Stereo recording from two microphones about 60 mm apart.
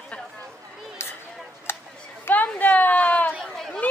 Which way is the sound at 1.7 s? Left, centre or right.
Left.